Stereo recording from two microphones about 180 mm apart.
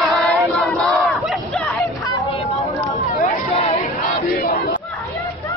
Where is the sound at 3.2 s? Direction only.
35° left (ahead or behind).